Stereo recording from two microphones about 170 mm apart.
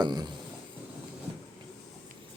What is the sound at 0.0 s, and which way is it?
Speech, 25° right (ahead or behind).